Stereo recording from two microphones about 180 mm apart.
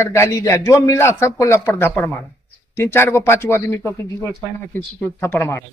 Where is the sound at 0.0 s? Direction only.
15° left (ahead or behind).